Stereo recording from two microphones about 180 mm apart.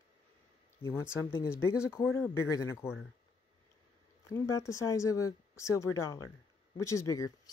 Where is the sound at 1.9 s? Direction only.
15° left (ahead or behind).